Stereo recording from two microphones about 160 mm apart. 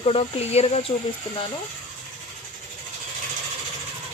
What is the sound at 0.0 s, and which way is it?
Speech, 40° left (ahead or behind).